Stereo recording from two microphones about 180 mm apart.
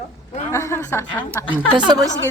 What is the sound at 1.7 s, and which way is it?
Speech, 25° right (ahead or behind).